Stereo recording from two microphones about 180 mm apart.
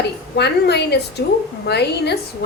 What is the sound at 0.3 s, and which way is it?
A woman's voice, 65° left (ahead or behind).